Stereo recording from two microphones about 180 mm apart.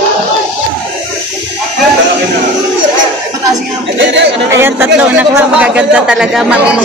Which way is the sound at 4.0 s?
90° right.